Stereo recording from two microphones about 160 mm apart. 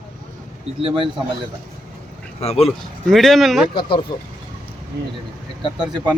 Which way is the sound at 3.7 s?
30° left (ahead or behind).